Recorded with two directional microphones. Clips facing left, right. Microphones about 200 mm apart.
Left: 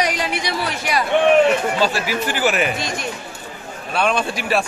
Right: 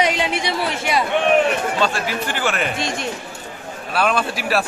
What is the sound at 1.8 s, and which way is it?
Speech, 5° left (ahead or behind).